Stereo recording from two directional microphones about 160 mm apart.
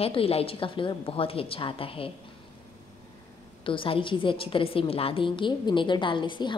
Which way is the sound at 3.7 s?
35° left (ahead or behind).